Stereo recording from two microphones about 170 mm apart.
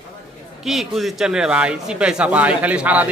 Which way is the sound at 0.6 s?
Centre (ahead or behind).